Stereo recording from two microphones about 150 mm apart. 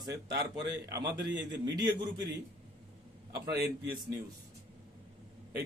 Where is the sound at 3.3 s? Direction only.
90° right.